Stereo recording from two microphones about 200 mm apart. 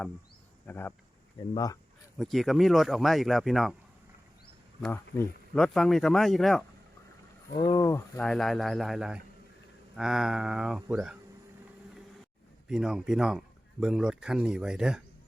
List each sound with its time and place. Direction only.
0.7 s speech: 10° left (ahead or behind)
2.1 s speech: centre (ahead or behind)
4.8 s speech: 10° left (ahead or behind)
7.5 s speech: 20° left (ahead or behind)
8.2 s speech: centre (ahead or behind)
12.6 s speech: centre (ahead or behind)